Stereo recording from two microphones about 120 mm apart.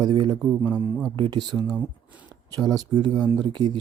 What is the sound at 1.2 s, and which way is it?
Speech, 40° right (ahead or behind).